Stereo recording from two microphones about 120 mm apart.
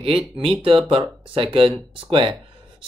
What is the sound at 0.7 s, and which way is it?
Speech, 45° right (ahead or behind).